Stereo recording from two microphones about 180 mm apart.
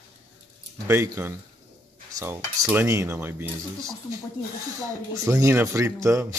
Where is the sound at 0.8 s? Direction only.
15° right (ahead or behind).